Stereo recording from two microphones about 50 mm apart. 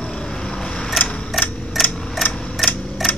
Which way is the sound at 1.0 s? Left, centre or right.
Centre.